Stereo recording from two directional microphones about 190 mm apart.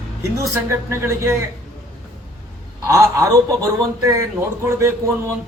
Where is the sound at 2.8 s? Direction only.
15° right (ahead or behind).